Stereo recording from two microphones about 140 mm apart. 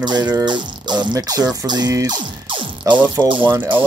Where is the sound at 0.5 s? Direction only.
35° right (ahead or behind).